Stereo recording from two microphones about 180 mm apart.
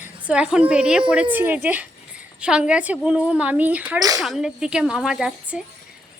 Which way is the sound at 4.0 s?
20° right (ahead or behind).